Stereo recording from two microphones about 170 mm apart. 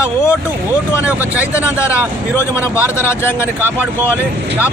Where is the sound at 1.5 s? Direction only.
15° left (ahead or behind).